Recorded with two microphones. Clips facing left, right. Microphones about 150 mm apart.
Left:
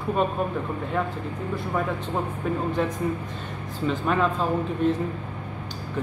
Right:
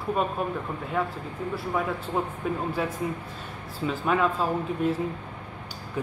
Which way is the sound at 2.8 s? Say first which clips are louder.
Left 3 dB; 5° right (ahead or behind).